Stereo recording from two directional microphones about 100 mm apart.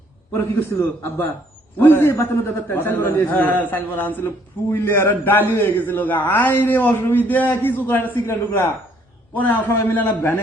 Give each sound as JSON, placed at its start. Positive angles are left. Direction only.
{"t": 0.3, "sound": "a man's voice", "side_deg": 20}